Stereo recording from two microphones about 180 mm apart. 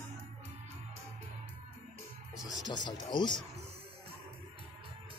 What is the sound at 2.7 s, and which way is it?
Music, 25° left (ahead or behind).